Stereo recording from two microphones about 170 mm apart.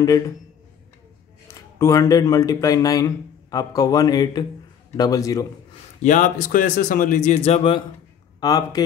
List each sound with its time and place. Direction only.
1.5 s speech: 20° left (ahead or behind)
6.0 s a man's voice: 45° left (ahead or behind)
8.4 s speech: 20° left (ahead or behind)